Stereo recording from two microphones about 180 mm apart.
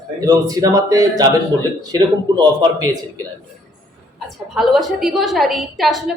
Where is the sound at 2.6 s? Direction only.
20° right (ahead or behind).